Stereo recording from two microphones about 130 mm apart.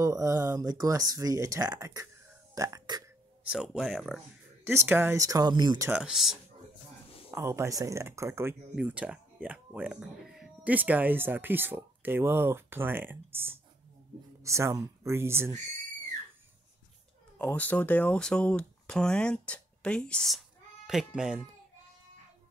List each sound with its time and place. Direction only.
0.0 s speech: 25° right (ahead or behind)
3.4 s speech: 5° right (ahead or behind)
4.6 s speech: 15° right (ahead or behind); by 5.9 s 35° right (ahead or behind)
5.9 s speech: 5° right (ahead or behind)
7.2 s speech: 20° right (ahead or behind)
17.4 s speech: 15° left (ahead or behind); by 21.5 s 5° right (ahead or behind)